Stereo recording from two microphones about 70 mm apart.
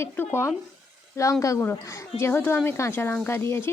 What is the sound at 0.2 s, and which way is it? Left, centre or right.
Speech, left.